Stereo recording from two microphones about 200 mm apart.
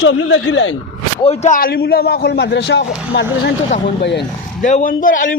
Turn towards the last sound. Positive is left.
turn(degrees=45)  # may be behind; listen again after turning